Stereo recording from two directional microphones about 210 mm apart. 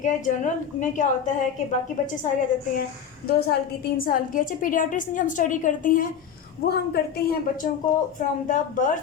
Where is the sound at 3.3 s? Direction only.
50° left (ahead or behind).